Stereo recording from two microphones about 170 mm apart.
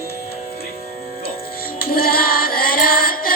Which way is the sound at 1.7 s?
60° left (ahead or behind).